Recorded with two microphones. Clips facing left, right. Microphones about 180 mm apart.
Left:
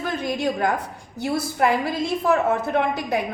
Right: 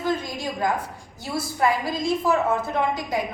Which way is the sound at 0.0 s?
65° left (ahead or behind).